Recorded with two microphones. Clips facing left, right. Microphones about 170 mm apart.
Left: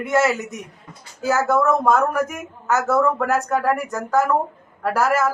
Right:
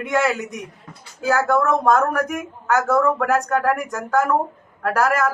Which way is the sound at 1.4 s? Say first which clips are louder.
Left 1 dB; 5° left (ahead or behind).